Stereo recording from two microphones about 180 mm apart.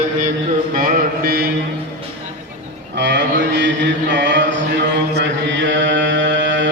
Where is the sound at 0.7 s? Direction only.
55° right (ahead or behind).